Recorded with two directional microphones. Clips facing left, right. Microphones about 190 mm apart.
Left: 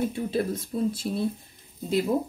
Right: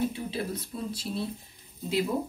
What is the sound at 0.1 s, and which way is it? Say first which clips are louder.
Speech: left 6 dB; 50° left (ahead or behind).